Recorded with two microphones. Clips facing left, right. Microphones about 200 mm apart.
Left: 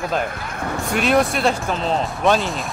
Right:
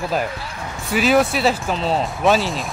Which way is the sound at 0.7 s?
Centre (ahead or behind).